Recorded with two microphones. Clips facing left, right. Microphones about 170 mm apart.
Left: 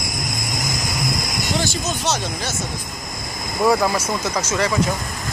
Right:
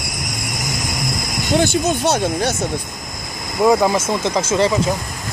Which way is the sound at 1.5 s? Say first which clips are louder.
Right 9 dB; 55° right (ahead or behind).